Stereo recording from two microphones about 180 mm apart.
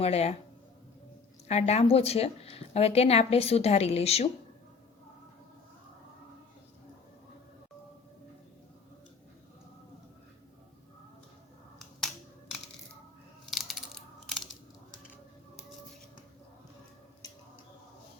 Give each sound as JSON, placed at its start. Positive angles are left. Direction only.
{"t": 0.0, "sound": "a woman's voice", "side_deg": 35}
{"t": 1.5, "sound": "a woman's voice", "side_deg": 35}
{"t": 11.9, "sound": "finger snapping", "side_deg": 0}
{"t": 13.4, "sound": "a sound", "side_deg": 0}